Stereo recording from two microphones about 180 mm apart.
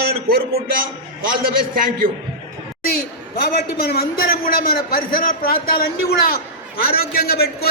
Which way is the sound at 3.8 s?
60° left (ahead or behind).